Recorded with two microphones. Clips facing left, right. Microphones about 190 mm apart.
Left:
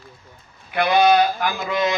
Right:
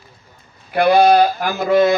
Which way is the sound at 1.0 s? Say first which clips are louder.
Right 3 dB; 50° right (ahead or behind).